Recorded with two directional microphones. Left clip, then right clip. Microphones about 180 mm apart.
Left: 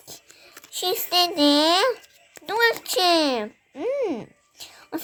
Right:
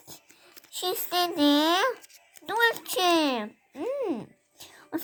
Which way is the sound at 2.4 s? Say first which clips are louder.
Left 4 dB; 25° left (ahead or behind).